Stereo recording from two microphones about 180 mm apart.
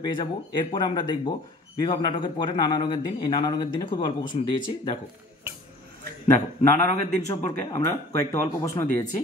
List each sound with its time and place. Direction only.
0.0 s a man's voice: 25° left (ahead or behind)
6.7 s a man's voice: 15° left (ahead or behind)